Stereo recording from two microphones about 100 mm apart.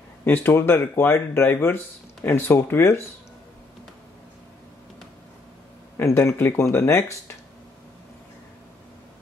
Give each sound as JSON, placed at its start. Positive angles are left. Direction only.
{"t": 0.2, "sound": "speech", "side_deg": 20}
{"t": 5.9, "sound": "speech", "side_deg": 25}